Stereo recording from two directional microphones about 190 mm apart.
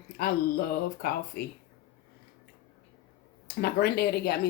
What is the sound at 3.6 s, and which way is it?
Speech, 55° left (ahead or behind).